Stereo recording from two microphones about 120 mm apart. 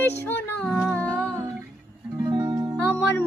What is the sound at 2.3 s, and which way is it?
Music, 30° right (ahead or behind).